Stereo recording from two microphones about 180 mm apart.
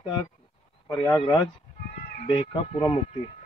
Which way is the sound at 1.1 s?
25° left (ahead or behind).